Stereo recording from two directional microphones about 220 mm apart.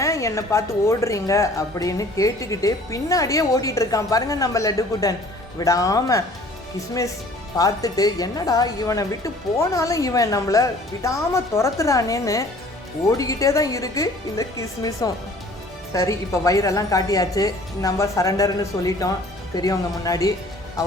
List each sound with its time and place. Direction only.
0.0 s speech: 15° left (ahead or behind)